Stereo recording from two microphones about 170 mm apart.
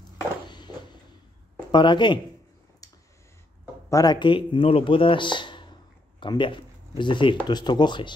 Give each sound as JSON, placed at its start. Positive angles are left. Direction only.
{"t": 0.5, "sound": "a sound", "side_deg": 25}
{"t": 1.7, "sound": "speech", "side_deg": 25}
{"t": 3.9, "sound": "speech", "side_deg": 25}